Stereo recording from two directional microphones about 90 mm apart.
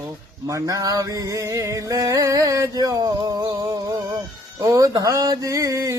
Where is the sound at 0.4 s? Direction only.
40° right (ahead or behind).